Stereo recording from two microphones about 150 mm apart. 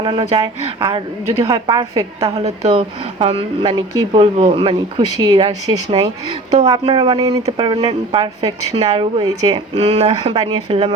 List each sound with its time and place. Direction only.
0.0 s speech: 30° right (ahead or behind)
1.5 s a woman's voice: 25° right (ahead or behind)
2.3 s speech: 45° right (ahead or behind)